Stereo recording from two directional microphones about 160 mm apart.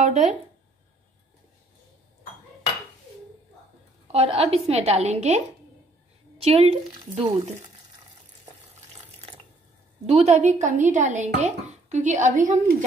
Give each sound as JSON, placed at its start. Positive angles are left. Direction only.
{"t": 0.0, "sound": "speech", "side_deg": -45}
{"t": 4.1, "sound": "a woman's voice", "side_deg": -40}
{"t": 10.0, "sound": "speech", "side_deg": -45}